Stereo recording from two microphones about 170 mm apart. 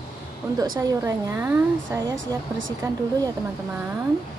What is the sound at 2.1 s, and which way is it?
Speech, 90° right.